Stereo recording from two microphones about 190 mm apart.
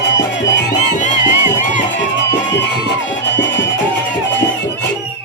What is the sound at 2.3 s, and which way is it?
Music, 70° left (ahead or behind).